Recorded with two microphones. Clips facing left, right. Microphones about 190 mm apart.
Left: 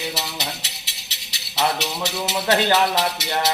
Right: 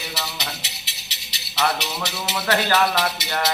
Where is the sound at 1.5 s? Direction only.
15° left (ahead or behind).